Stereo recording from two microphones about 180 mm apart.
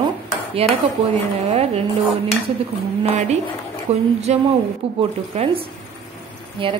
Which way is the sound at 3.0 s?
40° right (ahead or behind).